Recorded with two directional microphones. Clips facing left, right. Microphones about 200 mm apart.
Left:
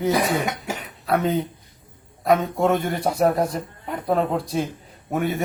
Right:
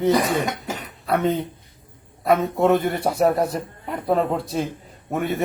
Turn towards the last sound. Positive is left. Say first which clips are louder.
# even
turn(degrees=0)  # may be behind; listen again after turning